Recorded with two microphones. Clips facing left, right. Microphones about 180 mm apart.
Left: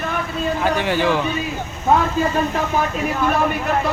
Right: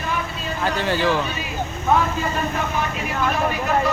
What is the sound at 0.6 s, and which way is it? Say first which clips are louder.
Music: left 1 dB; 15° left (ahead or behind).